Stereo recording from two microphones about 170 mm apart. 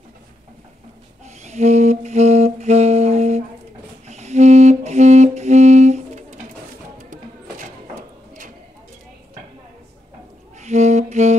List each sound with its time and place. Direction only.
1.2 s music: 40° right (ahead or behind)
10.6 s music: 40° right (ahead or behind)